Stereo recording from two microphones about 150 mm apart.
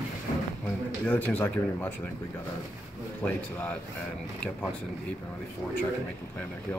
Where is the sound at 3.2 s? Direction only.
10° left (ahead or behind).